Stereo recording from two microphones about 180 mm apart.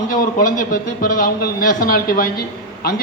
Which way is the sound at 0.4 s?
50° left (ahead or behind).